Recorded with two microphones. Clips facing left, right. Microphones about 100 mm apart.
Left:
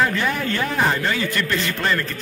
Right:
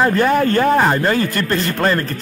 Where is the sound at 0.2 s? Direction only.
45° right (ahead or behind).